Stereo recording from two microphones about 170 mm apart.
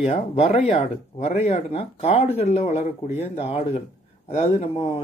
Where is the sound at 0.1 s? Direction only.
35° left (ahead or behind).